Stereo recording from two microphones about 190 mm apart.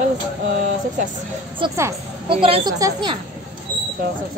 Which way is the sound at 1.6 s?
25° right (ahead or behind).